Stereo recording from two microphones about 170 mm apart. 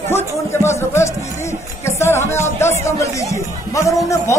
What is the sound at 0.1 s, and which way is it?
Speech, 15° left (ahead or behind).